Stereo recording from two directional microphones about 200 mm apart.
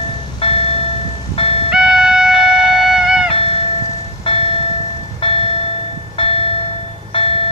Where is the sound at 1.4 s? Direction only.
30° left (ahead or behind).